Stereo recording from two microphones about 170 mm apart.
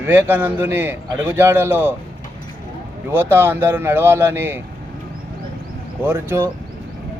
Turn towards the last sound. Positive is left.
turn(degrees=-15)  # may be behind; listen again after turning